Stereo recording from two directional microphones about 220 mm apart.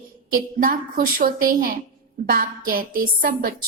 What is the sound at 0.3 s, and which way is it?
A woman's voice, 40° right (ahead or behind).